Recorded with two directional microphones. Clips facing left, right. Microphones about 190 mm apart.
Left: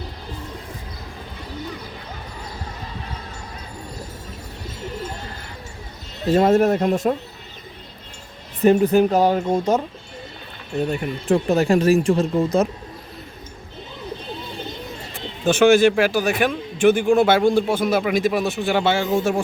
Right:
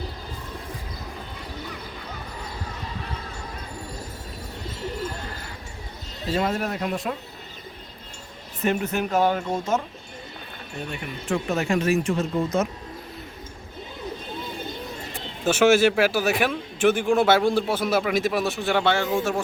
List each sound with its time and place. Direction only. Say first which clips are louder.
6.2 s speech: left 10 dB; 45° left (ahead or behind)
8.6 s speech: left 10 dB; 35° left (ahead or behind)
15.4 s speech: left 4 dB; 5° right (ahead or behind); by 19.4 s 10° left (ahead or behind)